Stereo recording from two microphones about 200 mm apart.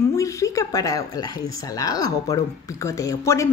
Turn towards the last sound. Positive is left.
turn(degrees=15)  # may be behind; listen again after turning